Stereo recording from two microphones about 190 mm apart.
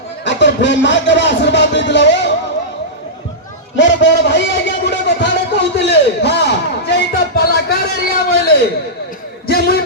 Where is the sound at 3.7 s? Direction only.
70° left (ahead or behind).